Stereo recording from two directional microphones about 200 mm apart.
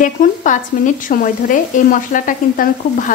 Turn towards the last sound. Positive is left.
turn(degrees=40)  # may be behind; listen again after turning